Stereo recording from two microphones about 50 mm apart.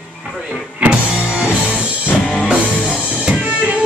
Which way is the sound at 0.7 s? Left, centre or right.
Right.